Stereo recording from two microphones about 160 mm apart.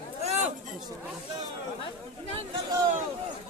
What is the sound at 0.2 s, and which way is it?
Chatter, 45° right (ahead or behind).